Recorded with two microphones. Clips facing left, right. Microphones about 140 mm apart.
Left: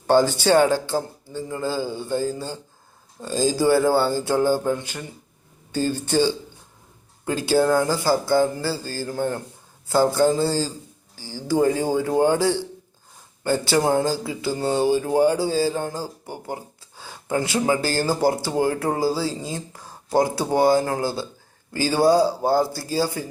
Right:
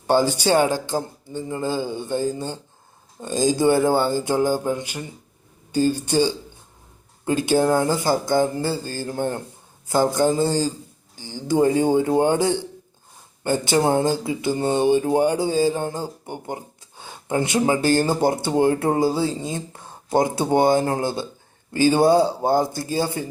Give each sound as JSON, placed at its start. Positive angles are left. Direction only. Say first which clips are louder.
{"t": 0.1, "sound": "speech", "louder": "left 1 dB", "side_deg": -15}